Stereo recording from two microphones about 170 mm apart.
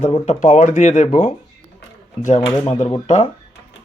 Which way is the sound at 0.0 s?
45° left (ahead or behind).